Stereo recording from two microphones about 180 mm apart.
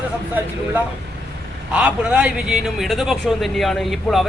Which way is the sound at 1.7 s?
5° right (ahead or behind).